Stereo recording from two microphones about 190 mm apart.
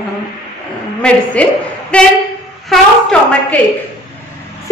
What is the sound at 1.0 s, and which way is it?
A woman's voice, 5° left (ahead or behind).